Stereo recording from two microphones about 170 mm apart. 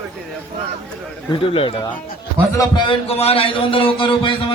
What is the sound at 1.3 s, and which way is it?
A man's voice, 30° left (ahead or behind).